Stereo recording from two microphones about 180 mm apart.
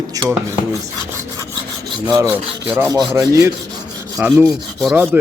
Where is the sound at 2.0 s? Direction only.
20° right (ahead or behind).